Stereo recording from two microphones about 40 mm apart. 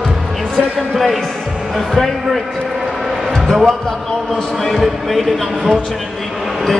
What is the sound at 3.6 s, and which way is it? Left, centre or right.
Speech, centre.